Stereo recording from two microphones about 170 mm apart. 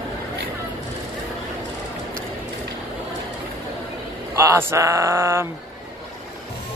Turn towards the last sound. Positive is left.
turn(degrees=-15)  # may be behind; listen again after turning